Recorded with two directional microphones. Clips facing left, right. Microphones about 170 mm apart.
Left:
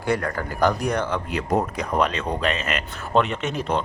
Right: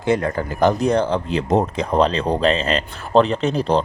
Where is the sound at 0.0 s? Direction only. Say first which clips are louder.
Right 5 dB; 20° right (ahead or behind).